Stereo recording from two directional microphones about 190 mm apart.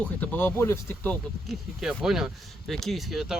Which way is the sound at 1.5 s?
Centre (ahead or behind).